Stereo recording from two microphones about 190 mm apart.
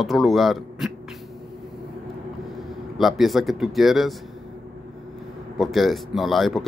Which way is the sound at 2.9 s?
Centre (ahead or behind).